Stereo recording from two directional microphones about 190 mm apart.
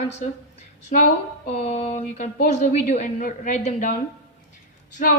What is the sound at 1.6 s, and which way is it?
A woman's voice, 35° left (ahead or behind).